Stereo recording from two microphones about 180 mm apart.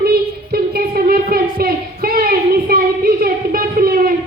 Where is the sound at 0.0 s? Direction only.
60° right (ahead or behind).